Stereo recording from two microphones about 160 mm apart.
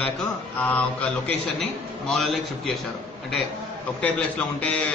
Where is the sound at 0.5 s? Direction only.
10° left (ahead or behind).